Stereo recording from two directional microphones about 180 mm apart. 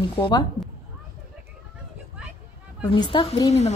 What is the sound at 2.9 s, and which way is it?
Speech, 30° left (ahead or behind).